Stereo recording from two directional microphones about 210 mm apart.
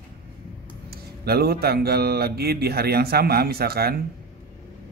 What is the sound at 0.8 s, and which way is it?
Speech, 45° right (ahead or behind).